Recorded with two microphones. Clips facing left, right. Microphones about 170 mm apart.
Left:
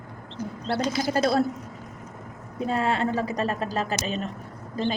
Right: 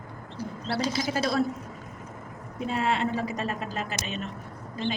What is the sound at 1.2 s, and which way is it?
Speech, 35° left (ahead or behind).